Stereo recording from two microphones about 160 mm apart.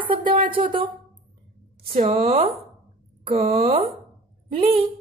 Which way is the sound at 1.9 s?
40° right (ahead or behind).